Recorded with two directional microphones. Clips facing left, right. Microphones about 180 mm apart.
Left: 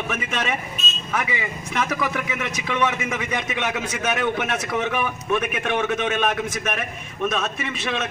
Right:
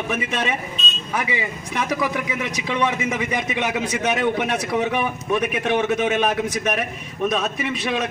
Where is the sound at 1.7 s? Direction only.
15° right (ahead or behind).